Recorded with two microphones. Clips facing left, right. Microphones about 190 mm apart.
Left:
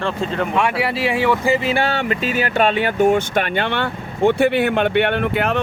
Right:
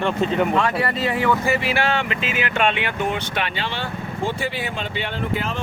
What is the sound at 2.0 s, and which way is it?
Speech, 40° left (ahead or behind).